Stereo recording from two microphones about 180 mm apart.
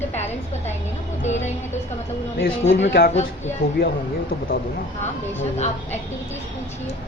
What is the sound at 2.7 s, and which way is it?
Speech, 80° left.